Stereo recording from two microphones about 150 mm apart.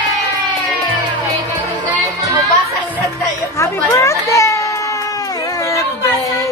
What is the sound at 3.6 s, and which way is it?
Chatter, 20° left (ahead or behind).